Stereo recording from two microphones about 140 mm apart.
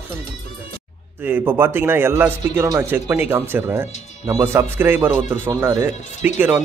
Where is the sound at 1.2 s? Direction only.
15° right (ahead or behind).